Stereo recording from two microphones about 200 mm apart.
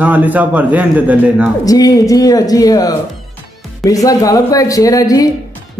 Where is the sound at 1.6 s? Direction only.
15° left (ahead or behind).